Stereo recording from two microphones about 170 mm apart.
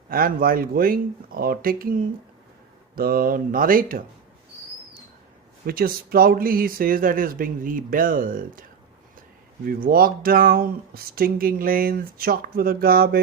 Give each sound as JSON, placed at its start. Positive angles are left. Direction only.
{"t": 0.1, "sound": "speech", "side_deg": -60}
{"t": 5.6, "sound": "speech", "side_deg": -60}
{"t": 9.6, "sound": "speech", "side_deg": -60}